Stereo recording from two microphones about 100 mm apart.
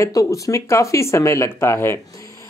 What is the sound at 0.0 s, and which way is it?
Speech, 35° left (ahead or behind).